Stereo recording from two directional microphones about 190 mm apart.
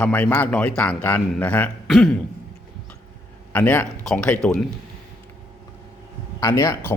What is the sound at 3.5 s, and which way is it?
A man's voice, 10° left (ahead or behind).